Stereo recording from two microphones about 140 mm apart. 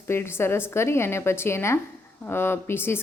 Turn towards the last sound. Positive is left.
turn(degrees=15)  # may be behind; listen again after turning